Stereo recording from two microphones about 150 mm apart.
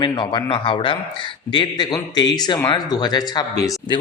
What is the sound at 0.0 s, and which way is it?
A man's voice, 30° left (ahead or behind).